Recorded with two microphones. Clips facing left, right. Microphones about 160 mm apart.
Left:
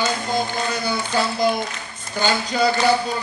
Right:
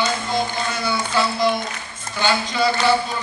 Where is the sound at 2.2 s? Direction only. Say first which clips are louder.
Even; 45° left (ahead or behind).